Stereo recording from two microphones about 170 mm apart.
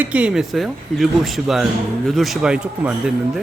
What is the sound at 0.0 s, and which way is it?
Speech, 5° right (ahead or behind).